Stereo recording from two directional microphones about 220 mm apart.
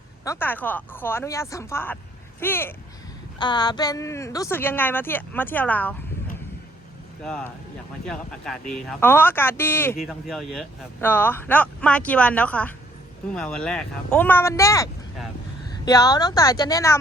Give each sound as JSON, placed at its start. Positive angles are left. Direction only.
{"t": 0.3, "sound": "speech", "side_deg": 10}
{"t": 3.3, "sound": "speech", "side_deg": 20}
{"t": 7.2, "sound": "speech", "side_deg": 5}
{"t": 10.0, "sound": "speech", "side_deg": 0}